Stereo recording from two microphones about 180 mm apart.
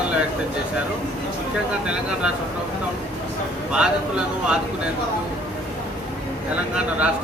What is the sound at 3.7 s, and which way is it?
Speech, 5° right (ahead or behind).